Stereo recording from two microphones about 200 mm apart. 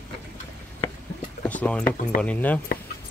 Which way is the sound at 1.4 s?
5° left (ahead or behind).